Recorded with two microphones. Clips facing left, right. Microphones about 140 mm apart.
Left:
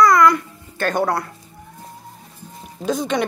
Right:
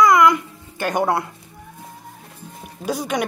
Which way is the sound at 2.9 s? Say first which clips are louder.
Left 2 dB; 10° right (ahead or behind).